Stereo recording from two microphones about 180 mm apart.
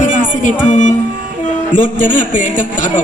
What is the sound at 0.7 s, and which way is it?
A woman's voice, 45° left (ahead or behind).